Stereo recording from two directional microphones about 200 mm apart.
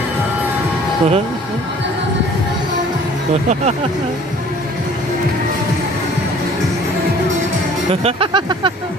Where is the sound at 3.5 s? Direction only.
35° right (ahead or behind).